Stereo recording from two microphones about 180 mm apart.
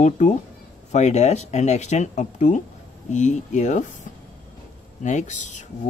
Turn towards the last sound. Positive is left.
turn(degrees=40)  # may be behind; listen again after turning